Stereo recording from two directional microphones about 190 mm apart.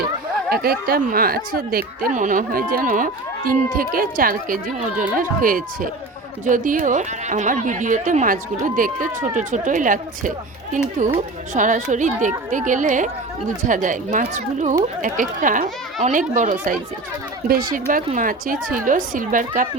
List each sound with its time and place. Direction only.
0.5 s speech: 50° right (ahead or behind)